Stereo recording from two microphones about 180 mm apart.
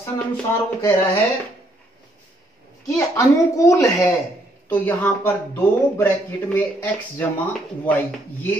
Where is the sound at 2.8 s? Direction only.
15° left (ahead or behind).